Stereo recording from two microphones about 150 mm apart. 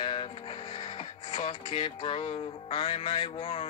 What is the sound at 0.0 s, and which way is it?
Music, 35° left (ahead or behind).